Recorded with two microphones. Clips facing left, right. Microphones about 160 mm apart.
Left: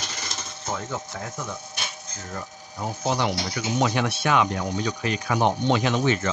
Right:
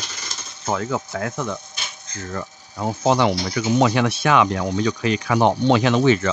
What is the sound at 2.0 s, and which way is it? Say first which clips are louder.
Speech: right 5 dB; 85° right.